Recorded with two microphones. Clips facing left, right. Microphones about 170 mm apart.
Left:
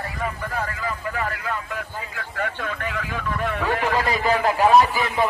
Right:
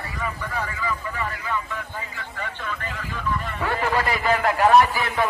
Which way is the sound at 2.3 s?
60° left (ahead or behind).